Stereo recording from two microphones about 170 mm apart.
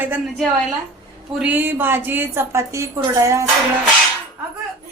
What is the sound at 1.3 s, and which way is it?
A woman's voice, 10° right (ahead or behind).